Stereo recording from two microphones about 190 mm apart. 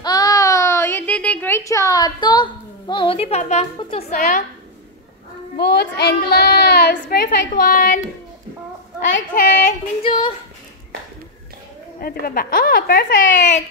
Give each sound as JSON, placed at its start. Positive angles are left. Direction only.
{"t": 0.0, "sound": "a sound", "side_deg": 20}
{"t": 4.1, "sound": "a woman's voice", "side_deg": 40}
{"t": 5.6, "sound": "a child's voice", "side_deg": 60}
{"t": 9.3, "sound": "a woman's voice", "side_deg": 45}
{"t": 10.0, "sound": "speech", "side_deg": 25}
{"t": 12.0, "sound": "a woman's voice", "side_deg": 50}